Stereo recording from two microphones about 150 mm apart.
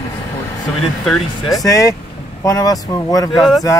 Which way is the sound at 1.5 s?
20° left (ahead or behind).